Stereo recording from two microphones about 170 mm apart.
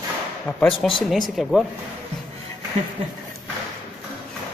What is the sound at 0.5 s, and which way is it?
Speech, 10° left (ahead or behind).